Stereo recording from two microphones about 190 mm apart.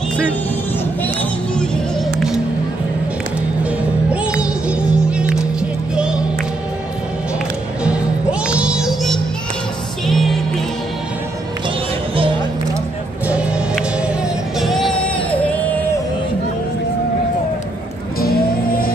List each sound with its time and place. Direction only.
1.0 s music: 5° left (ahead or behind)
4.1 s music: 5° right (ahead or behind)
7.8 s music: 5° right (ahead or behind)
13.3 s music: 5° right (ahead or behind)
18.2 s music: 50° left (ahead or behind)